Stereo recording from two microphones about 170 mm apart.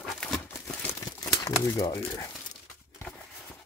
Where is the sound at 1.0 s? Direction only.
20° left (ahead or behind).